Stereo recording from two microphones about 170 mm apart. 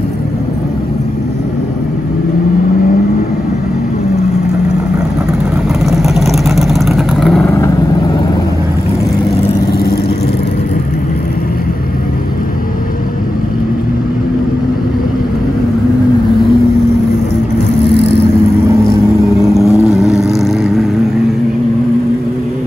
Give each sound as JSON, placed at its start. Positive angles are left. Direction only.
{"t": 5.9, "sound": "vehicle", "side_deg": 0}
{"t": 19.4, "sound": "vehicle", "side_deg": 0}